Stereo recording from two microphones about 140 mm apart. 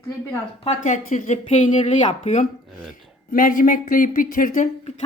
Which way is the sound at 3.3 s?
80° left.